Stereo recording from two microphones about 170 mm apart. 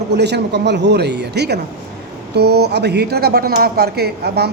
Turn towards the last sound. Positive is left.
turn(degrees=-70)  # may be behind; listen again after turning